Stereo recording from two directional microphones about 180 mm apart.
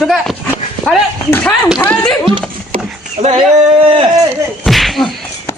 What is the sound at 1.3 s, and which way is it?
A man's voice, 10° left (ahead or behind).